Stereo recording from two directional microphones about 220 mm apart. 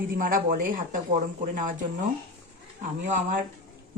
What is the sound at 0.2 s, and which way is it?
Speech, 40° right (ahead or behind).